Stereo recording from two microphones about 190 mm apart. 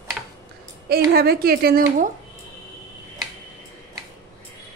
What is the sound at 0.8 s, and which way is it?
Speech, 55° right (ahead or behind).